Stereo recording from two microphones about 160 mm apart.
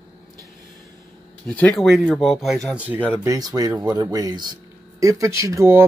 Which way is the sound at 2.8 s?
10° right (ahead or behind).